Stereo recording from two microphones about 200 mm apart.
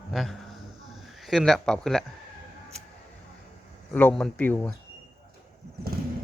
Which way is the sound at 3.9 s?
5° left (ahead or behind).